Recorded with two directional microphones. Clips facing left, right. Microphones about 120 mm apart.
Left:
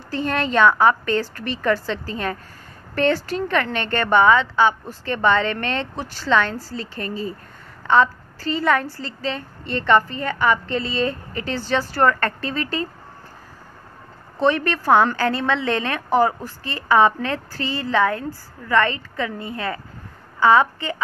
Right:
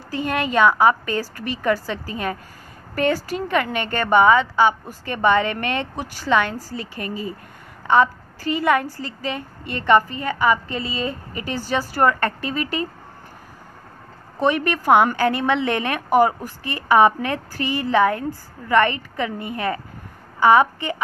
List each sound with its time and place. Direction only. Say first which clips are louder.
0.1 s a woman's voice: even; 10° right (ahead or behind)
14.3 s a woman's voice: left 1 dB; 15° right (ahead or behind)